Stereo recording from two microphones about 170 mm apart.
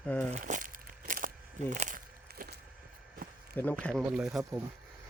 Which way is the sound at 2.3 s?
70° right (ahead or behind).